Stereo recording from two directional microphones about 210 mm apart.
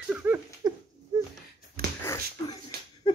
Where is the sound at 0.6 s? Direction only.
20° right (ahead or behind).